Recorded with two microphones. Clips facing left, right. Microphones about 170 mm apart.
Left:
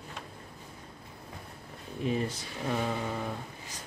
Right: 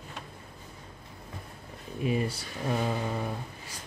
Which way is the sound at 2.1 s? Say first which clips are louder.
Right 2 dB; 10° right (ahead or behind).